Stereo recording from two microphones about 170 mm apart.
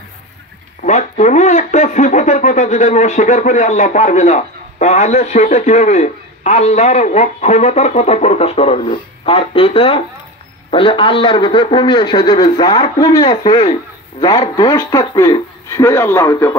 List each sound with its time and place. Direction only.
0.8 s a man's voice: 45° left (ahead or behind); by 16.5 s 20° left (ahead or behind)